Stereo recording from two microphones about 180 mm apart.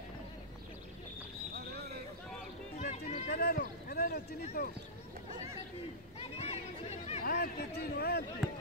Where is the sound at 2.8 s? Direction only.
40° left (ahead or behind).